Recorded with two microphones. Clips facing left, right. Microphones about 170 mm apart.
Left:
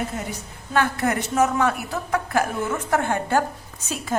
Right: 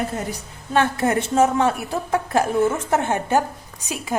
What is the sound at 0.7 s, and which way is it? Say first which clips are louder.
A woman's voice: right 3 dB; 25° right (ahead or behind).